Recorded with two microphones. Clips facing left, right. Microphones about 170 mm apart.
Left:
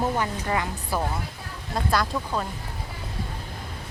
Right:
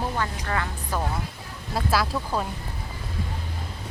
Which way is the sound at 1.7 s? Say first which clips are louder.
Even; 5° right (ahead or behind).